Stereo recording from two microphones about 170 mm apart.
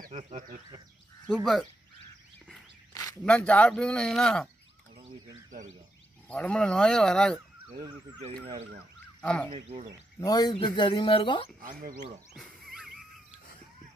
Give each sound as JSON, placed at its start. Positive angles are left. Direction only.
{"t": 0.0, "sound": "speech", "side_deg": -40}
{"t": 1.3, "sound": "speech", "side_deg": 0}
{"t": 2.9, "sound": "a sound", "side_deg": 20}
{"t": 3.3, "sound": "speech", "side_deg": 5}
{"t": 6.2, "sound": "speech", "side_deg": 5}
{"t": 7.3, "sound": "speech", "side_deg": -20}
{"t": 9.2, "sound": "speech", "side_deg": 5}
{"t": 9.5, "sound": "speech", "side_deg": -45}
{"t": 10.2, "sound": "speech", "side_deg": 25}
{"t": 11.6, "sound": "speech", "side_deg": -55}
{"t": 12.4, "sound": "a sound", "side_deg": 0}